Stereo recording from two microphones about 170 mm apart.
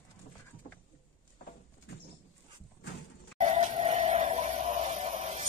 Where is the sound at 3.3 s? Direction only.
40° right (ahead or behind).